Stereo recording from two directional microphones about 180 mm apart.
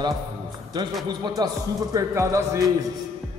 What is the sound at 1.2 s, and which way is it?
A man's voice, 20° right (ahead or behind).